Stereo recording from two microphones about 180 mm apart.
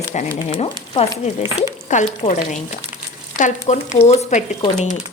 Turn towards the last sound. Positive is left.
turn(degrees=35)  # may be behind; listen again after turning